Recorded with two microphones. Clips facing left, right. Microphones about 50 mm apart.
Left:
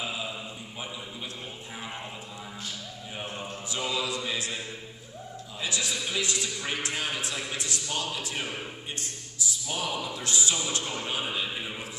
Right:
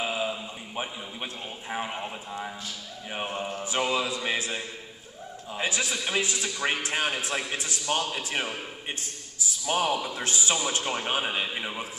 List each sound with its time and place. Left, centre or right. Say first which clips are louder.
0.7 s speech: right 6 dB; right
3.3 s speech: right 5 dB; right
5.6 s a man's voice: right 3 dB; right
7.8 s speech: right 8 dB; right
8.2 s a man's voice: right 3 dB; right
9.7 s speech: right 7 dB; right